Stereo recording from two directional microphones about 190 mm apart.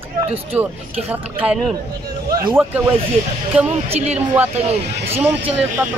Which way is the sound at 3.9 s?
35° right (ahead or behind).